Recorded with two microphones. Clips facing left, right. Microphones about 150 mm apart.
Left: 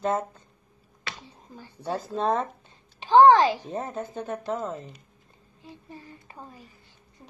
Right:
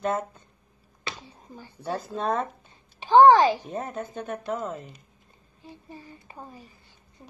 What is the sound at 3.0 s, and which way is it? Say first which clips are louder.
Speech: right 1 dB; 5° right (ahead or behind).